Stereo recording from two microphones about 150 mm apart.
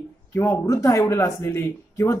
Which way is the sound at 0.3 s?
20° left (ahead or behind).